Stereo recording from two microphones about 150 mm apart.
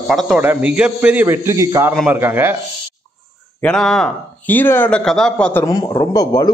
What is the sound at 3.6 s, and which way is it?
Speech, 5° left (ahead or behind).